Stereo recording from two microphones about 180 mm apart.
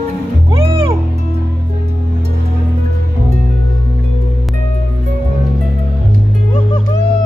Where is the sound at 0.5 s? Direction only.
30° right (ahead or behind).